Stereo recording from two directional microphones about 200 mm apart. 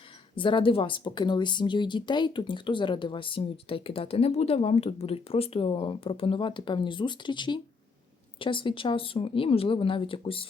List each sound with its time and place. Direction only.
0.3 s speech: 25° left (ahead or behind)